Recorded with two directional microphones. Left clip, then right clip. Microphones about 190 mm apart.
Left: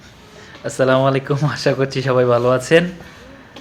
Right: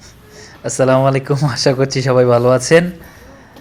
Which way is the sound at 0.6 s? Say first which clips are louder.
Right 2 dB; 15° right (ahead or behind).